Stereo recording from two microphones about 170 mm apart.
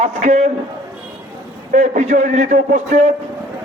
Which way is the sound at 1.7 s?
45° right (ahead or behind).